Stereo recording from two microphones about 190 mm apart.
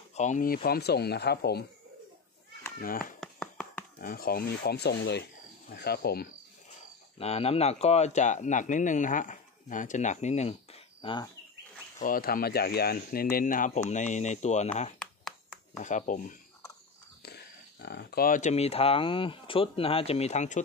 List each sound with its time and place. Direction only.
0.1 s speech: 40° left (ahead or behind); by 1.6 s 60° left (ahead or behind)
2.8 s speech: 50° left (ahead or behind)
3.2 s a sound: 5° left (ahead or behind)
4.0 s speech: 50° left (ahead or behind)
7.2 s speech: 30° left (ahead or behind)
12.0 s speech: 50° left (ahead or behind)
15.8 s speech: 40° left (ahead or behind)
17.2 s speech: 55° left (ahead or behind); by 20.6 s 40° left (ahead or behind)